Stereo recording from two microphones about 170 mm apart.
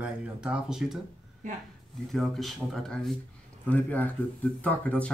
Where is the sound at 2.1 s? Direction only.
Centre (ahead or behind).